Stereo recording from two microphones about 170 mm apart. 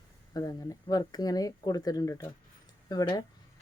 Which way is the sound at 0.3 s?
20° left (ahead or behind).